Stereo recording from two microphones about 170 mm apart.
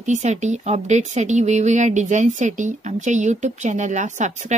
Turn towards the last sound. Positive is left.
turn(degrees=-45)  # may be behind; listen again after turning